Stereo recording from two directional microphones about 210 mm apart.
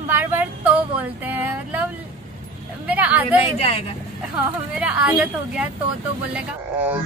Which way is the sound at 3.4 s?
30° left (ahead or behind).